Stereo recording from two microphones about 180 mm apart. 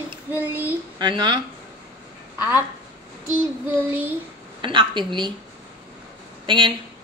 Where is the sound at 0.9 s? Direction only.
25° right (ahead or behind).